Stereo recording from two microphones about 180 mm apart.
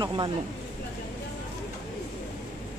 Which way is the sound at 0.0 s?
25° right (ahead or behind).